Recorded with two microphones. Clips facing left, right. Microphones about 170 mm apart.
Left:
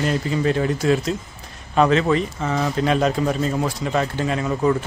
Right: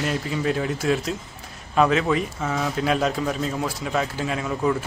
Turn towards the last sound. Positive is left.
turn(degrees=0)  # may be behind; listen again after turning